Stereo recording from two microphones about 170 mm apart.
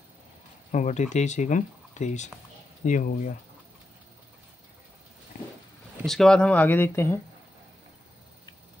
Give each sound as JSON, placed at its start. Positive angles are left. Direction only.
{"t": 0.7, "sound": "speech", "side_deg": 45}
{"t": 6.0, "sound": "speech", "side_deg": 5}